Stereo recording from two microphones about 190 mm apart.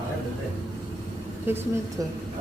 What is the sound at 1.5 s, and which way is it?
Speech, 10° right (ahead or behind).